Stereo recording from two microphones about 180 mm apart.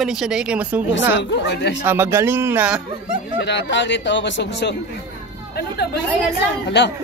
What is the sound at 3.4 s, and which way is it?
Speech, 70° left (ahead or behind).